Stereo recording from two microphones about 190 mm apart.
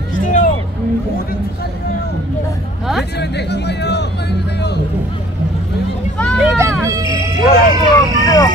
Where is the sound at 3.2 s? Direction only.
60° left (ahead or behind).